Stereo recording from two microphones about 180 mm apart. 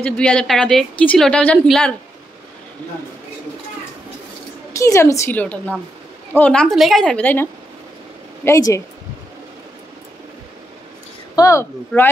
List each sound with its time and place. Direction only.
0.0 s a woman's voice: 5° left (ahead or behind)
4.7 s a woman's voice: 15° left (ahead or behind)
8.5 s a woman's voice: 15° left (ahead or behind)
11.3 s a man's voice: 15° left (ahead or behind)